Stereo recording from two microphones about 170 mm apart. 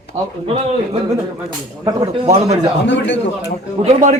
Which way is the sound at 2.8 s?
90° left.